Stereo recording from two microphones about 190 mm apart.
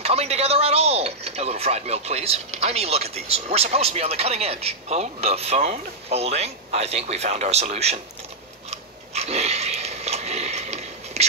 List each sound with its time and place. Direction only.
0.0 s speech: 35° right (ahead or behind)
8.6 s biting: 35° right (ahead or behind)